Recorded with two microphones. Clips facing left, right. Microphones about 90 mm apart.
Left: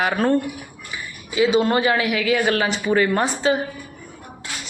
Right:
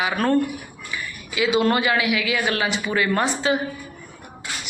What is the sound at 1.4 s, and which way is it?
Speech, 35° left (ahead or behind).